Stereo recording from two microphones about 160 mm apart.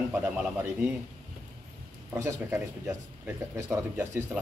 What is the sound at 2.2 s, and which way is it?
Speech, 15° right (ahead or behind).